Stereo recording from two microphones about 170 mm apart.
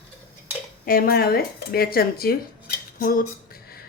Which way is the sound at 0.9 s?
60° left (ahead or behind).